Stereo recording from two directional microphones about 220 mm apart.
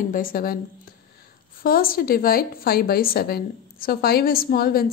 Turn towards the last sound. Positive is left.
turn(degrees=40)  # may be behind; listen again after turning